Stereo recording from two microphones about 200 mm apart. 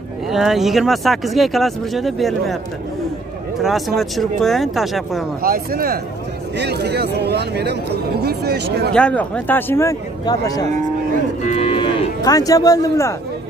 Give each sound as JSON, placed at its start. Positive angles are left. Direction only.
{"t": 0.3, "sound": "speech", "side_deg": 0}
{"t": 3.6, "sound": "speech", "side_deg": 0}
{"t": 5.4, "sound": "speech", "side_deg": -45}
{"t": 8.9, "sound": "speech", "side_deg": 5}
{"t": 11.4, "sound": "cattle", "side_deg": 30}